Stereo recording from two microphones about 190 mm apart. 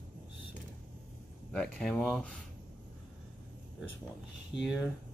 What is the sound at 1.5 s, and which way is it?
Speech, 5° left (ahead or behind).